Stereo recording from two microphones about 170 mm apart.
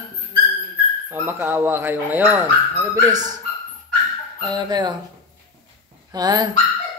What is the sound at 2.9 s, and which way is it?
Speech, 25° right (ahead or behind).